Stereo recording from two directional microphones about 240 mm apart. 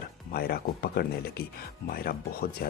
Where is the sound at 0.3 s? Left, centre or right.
Left.